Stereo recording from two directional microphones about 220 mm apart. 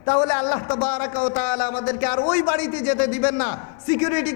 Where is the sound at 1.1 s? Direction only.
25° left (ahead or behind).